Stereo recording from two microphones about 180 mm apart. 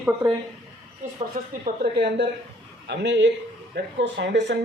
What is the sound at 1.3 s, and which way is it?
A woman's voice, 60° right (ahead or behind).